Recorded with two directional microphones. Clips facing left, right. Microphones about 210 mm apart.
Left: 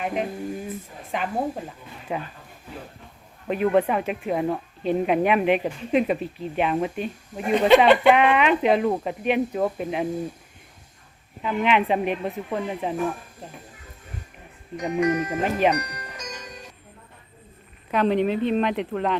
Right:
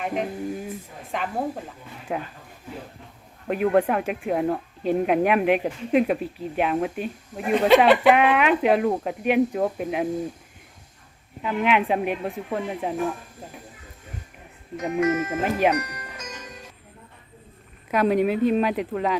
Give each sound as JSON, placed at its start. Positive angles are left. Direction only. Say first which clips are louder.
{"t": 0.0, "sound": "speech", "louder": "even", "side_deg": 0}
{"t": 3.4, "sound": "speech", "louder": "even", "side_deg": -5}
{"t": 11.4, "sound": "speech", "louder": "even", "side_deg": -5}
{"t": 14.8, "sound": "speech", "louder": "even", "side_deg": -5}
{"t": 17.9, "sound": "speech", "louder": "right 1 dB", "side_deg": -10}